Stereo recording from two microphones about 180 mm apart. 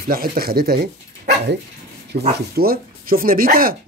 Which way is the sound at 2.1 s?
60° right (ahead or behind).